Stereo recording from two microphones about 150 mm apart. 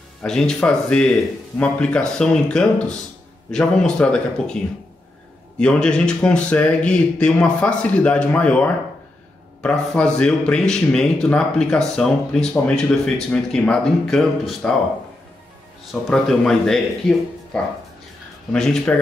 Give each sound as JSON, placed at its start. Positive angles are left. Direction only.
{"t": 0.2, "sound": "speech", "side_deg": 5}
{"t": 5.6, "sound": "speech", "side_deg": 5}
{"t": 15.9, "sound": "speech", "side_deg": 0}
{"t": 18.5, "sound": "speech", "side_deg": 5}